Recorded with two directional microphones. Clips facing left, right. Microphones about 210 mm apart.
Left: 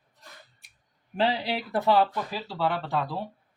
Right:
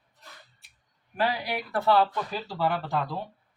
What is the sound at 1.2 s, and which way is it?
Speech, 25° left (ahead or behind).